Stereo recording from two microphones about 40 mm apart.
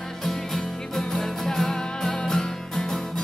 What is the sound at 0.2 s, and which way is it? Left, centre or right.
Music, centre.